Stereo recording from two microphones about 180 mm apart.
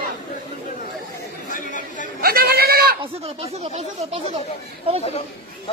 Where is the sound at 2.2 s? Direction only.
60° right (ahead or behind).